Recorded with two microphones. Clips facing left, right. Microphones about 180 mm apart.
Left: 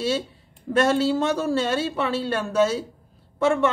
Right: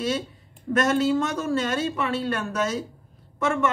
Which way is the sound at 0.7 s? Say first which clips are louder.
Left 1 dB; 30° left (ahead or behind).